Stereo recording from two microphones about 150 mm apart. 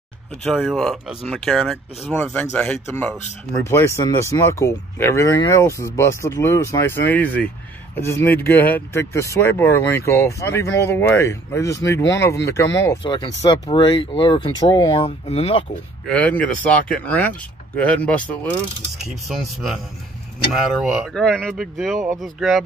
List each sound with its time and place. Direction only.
0.4 s speech: centre (ahead or behind)
3.6 s speech: 20° left (ahead or behind)
13.0 s speech: 30° left (ahead or behind)
16.1 s speech: 10° left (ahead or behind)
19.0 s speech: centre (ahead or behind)
20.8 s speech: centre (ahead or behind)